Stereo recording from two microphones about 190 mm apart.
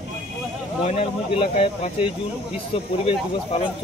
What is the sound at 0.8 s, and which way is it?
Speech, 30° left (ahead or behind).